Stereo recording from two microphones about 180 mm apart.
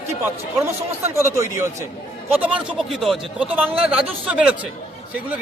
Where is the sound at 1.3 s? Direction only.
15° right (ahead or behind).